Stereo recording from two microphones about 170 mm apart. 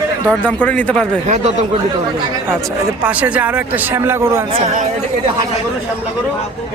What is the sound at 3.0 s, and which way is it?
Speech, 10° right (ahead or behind).